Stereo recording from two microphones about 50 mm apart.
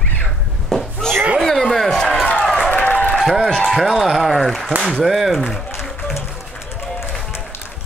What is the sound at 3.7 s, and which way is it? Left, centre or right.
Speech, centre.